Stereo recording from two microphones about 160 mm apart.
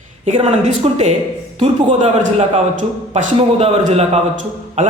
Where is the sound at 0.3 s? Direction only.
40° right (ahead or behind).